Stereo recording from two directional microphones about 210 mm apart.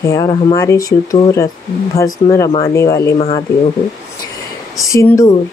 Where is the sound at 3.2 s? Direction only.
30° left (ahead or behind).